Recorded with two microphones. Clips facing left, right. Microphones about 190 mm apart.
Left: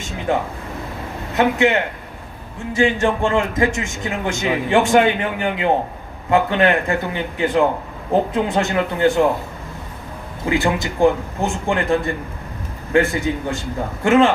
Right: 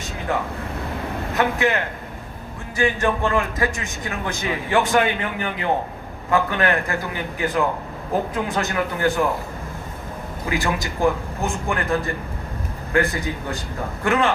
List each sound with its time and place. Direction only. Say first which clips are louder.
1.4 s a man's voice: left 5 dB; 25° left (ahead or behind)
10.4 s a man's voice: left 5 dB; 25° left (ahead or behind)